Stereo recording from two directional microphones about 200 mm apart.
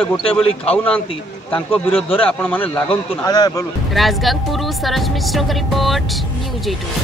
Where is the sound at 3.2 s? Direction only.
20° left (ahead or behind).